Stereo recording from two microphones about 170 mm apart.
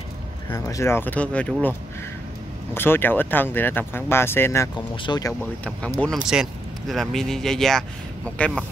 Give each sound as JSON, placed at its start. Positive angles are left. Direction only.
{"t": 0.5, "sound": "speech", "side_deg": 20}
{"t": 5.9, "sound": "speech", "side_deg": 0}